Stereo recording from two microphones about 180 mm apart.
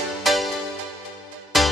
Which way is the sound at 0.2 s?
Centre (ahead or behind).